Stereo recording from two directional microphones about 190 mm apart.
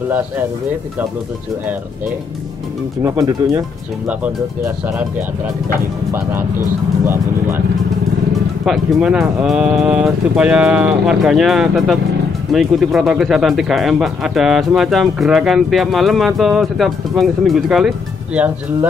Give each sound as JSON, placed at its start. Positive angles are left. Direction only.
{"t": 3.0, "sound": "speech", "side_deg": -15}
{"t": 7.1, "sound": "speech", "side_deg": -10}
{"t": 8.6, "sound": "speech", "side_deg": -5}